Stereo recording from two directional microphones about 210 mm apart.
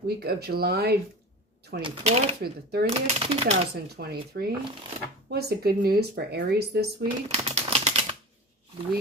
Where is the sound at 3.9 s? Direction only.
50° right (ahead or behind).